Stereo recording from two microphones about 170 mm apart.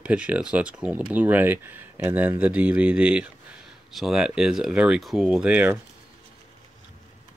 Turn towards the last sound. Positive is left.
turn(degrees=-10)  # may be behind; listen again after turning